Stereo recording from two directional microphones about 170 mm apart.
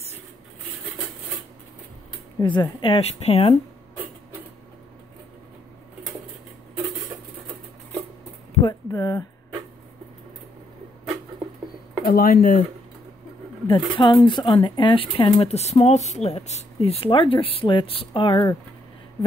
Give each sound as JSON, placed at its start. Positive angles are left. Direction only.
{"t": 2.4, "sound": "a woman's voice", "side_deg": 25}
{"t": 8.6, "sound": "speech", "side_deg": 20}
{"t": 12.0, "sound": "speech", "side_deg": 60}
{"t": 13.7, "sound": "a woman's voice", "side_deg": 30}